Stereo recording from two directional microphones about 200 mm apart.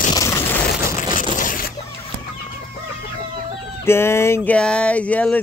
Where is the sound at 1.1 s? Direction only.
40° left (ahead or behind).